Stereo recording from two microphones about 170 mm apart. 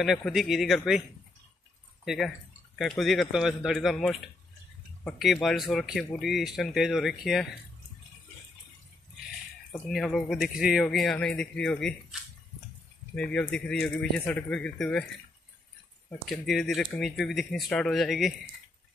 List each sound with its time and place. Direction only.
0.0 s speech: centre (ahead or behind)
2.0 s speech: centre (ahead or behind)
9.7 s speech: 5° left (ahead or behind)
16.3 s speech: centre (ahead or behind)